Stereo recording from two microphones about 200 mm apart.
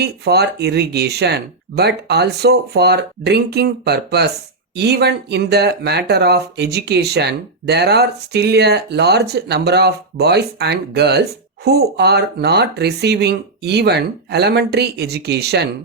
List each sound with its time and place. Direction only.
0.0 s speech: 55° right (ahead or behind)